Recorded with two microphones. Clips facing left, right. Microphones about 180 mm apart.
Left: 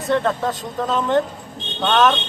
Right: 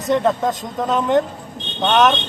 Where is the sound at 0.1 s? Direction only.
15° right (ahead or behind).